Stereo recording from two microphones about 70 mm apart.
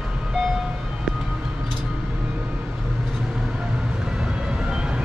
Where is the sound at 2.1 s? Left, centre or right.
Right.